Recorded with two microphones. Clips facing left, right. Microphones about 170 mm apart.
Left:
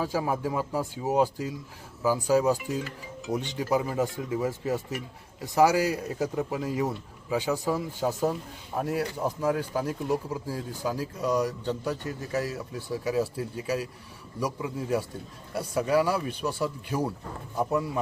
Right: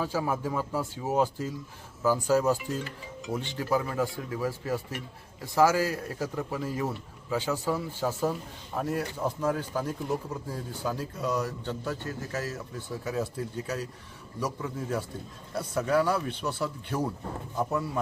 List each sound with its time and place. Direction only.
0.0 s a man's voice: 15° left (ahead or behind)